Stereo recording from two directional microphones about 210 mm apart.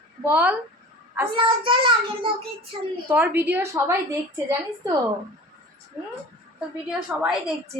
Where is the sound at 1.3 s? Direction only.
25° right (ahead or behind).